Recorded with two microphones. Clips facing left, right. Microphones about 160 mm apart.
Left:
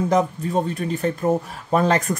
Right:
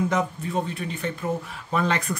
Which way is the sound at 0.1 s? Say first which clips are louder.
Left 6 dB; 35° left (ahead or behind).